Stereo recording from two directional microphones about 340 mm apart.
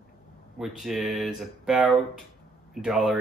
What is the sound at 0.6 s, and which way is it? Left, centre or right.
Speech, centre.